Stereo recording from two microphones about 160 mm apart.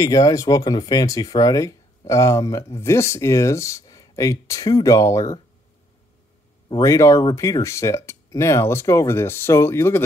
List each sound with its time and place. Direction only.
0.0 s speech: 20° left (ahead or behind)
6.7 s speech: 20° left (ahead or behind)